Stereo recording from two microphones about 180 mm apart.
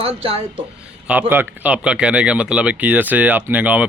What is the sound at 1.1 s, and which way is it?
Speech, 10° right (ahead or behind).